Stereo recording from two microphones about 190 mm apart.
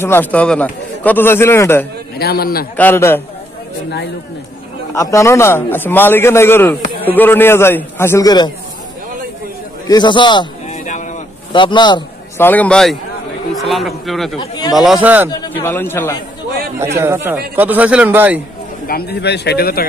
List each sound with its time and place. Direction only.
0.0 s a man's voice: 10° left (ahead or behind)
2.1 s a man's voice: 55° left (ahead or behind)
2.7 s a man's voice: 10° left (ahead or behind)
4.9 s a man's voice: 15° left (ahead or behind)
9.8 s a man's voice: 25° left (ahead or behind)
10.7 s a sound: 40° left (ahead or behind)
11.5 s a man's voice: 25° left (ahead or behind)
12.4 s a man's voice: 10° left (ahead or behind)
15.5 s a man's voice: 10° left (ahead or behind)
16.7 s a man's voice: 15° right (ahead or behind)
18.9 s speech: 55° left (ahead or behind)